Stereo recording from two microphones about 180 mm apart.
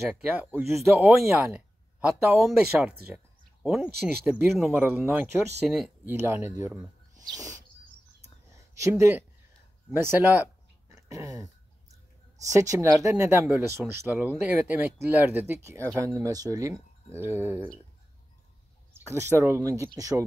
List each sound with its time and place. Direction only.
0.2 s speech: 10° right (ahead or behind)
6.2 s speech: 10° right (ahead or behind)
11.0 s a sound: 20° right (ahead or behind)
12.4 s speech: 15° right (ahead or behind)
18.9 s speech: 15° right (ahead or behind)